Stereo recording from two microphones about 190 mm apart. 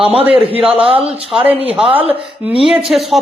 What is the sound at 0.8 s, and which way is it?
Speech, 30° right (ahead or behind).